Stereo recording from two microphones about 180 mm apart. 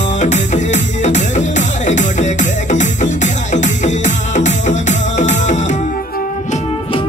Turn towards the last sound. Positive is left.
turn(degrees=40)  # may be behind; listen again after turning